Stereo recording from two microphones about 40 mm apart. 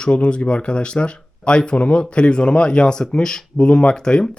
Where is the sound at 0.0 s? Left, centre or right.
Left.